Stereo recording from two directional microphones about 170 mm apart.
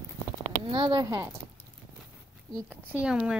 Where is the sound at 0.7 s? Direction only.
30° right (ahead or behind).